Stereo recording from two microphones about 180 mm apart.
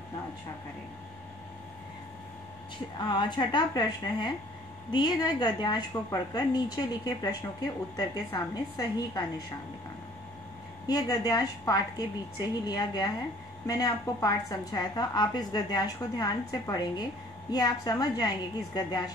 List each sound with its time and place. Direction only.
3.0 s a woman's voice: 25° left (ahead or behind)
10.9 s a woman's voice: 20° left (ahead or behind)